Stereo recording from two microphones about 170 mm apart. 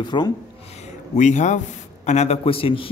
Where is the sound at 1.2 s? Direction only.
45° left (ahead or behind).